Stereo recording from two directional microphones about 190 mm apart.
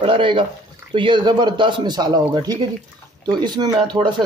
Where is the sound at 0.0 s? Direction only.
25° right (ahead or behind).